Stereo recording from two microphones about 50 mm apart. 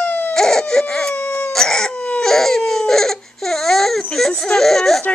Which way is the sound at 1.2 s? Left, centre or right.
Left.